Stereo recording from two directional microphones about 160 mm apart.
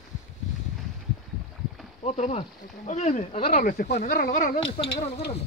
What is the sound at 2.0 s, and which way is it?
Speech, 45° left (ahead or behind).